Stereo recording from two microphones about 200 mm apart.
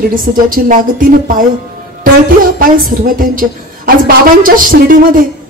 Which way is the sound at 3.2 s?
45° right (ahead or behind).